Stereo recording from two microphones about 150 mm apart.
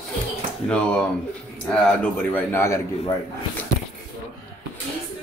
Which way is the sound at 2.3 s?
15° left (ahead or behind).